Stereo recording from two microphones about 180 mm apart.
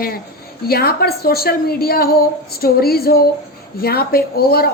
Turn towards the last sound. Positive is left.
turn(degrees=60)  # may be behind; listen again after turning